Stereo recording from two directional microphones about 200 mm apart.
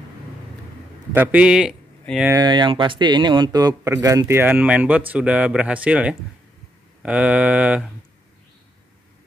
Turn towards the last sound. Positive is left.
turn(degrees=-5)  # may be behind; listen again after turning